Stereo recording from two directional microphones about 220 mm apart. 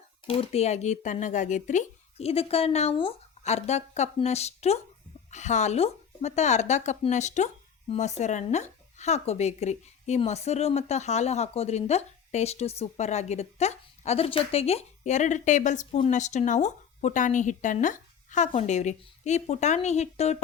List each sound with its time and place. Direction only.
0.3 s speech: 25° left (ahead or behind)